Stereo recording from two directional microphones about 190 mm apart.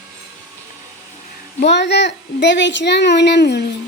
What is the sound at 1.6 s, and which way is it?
Speech, 65° left (ahead or behind).